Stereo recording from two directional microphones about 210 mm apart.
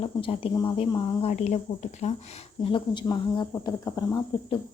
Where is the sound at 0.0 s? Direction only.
25° left (ahead or behind).